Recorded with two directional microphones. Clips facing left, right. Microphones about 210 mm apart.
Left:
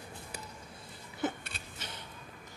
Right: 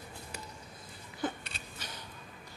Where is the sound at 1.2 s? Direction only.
20° left (ahead or behind).